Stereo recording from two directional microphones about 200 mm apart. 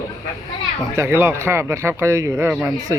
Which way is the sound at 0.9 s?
10° right (ahead or behind).